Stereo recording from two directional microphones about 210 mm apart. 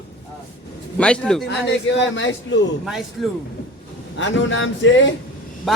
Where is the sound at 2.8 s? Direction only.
Centre (ahead or behind).